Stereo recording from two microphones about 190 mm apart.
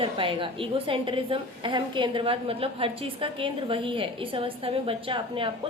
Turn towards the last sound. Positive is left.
turn(degrees=-25)  # may be behind; listen again after turning